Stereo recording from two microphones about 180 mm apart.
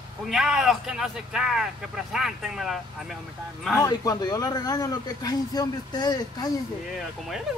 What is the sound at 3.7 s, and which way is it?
Speech, 20° left (ahead or behind).